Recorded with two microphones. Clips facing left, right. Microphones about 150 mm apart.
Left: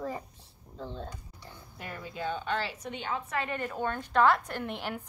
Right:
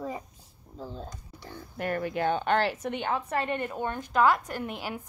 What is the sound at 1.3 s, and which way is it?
Speech, 70° right (ahead or behind).